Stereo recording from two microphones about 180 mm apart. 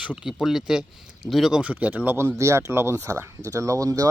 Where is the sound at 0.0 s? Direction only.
5° right (ahead or behind).